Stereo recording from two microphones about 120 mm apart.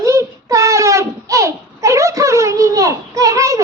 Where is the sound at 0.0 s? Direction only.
25° right (ahead or behind).